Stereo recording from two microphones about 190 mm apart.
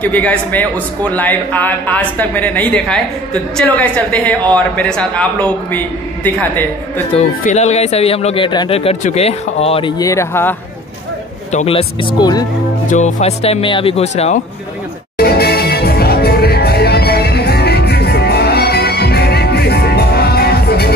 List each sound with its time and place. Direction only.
0.0 s a woman's voice: 10° left (ahead or behind)
7.2 s speech: 35° left (ahead or behind); by 10.5 s 15° left (ahead or behind)
11.5 s speech: 30° left (ahead or behind)
12.9 s speech: 35° left (ahead or behind)
15.1 s music: 55° left (ahead or behind)